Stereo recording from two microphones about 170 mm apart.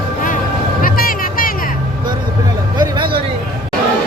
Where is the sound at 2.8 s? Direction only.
25° right (ahead or behind).